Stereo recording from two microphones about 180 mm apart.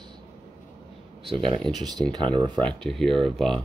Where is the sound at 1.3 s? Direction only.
30° right (ahead or behind).